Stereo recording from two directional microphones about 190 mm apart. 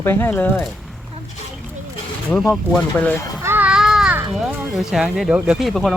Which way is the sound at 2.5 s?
5° left (ahead or behind).